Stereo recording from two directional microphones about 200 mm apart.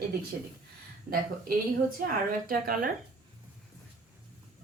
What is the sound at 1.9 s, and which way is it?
Speech, 45° right (ahead or behind).